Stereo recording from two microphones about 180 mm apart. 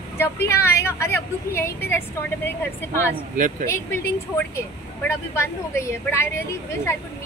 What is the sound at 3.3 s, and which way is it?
Speech, 45° right (ahead or behind).